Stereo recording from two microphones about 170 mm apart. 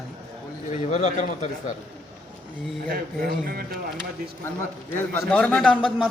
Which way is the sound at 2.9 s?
55° right (ahead or behind).